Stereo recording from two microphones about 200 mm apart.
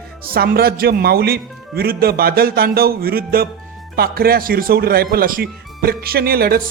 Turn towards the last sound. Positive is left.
turn(degrees=-50)  # may be behind; listen again after turning